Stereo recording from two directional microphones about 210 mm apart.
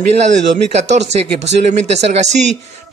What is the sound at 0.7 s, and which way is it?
Speech, 30° right (ahead or behind).